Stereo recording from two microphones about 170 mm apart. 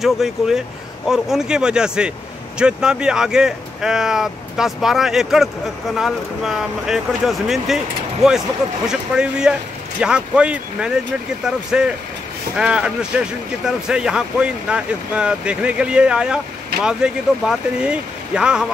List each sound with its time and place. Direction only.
0.0 s speech: centre (ahead or behind)